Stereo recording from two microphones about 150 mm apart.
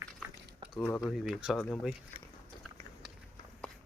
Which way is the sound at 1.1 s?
Centre (ahead or behind).